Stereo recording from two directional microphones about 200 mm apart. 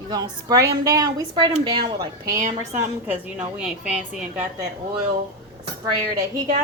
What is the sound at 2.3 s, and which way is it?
Speech, 40° right (ahead or behind).